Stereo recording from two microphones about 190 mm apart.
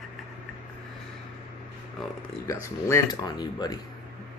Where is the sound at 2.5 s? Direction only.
15° left (ahead or behind).